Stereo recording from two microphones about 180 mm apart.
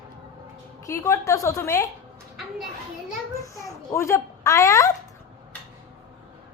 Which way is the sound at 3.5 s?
15° left (ahead or behind).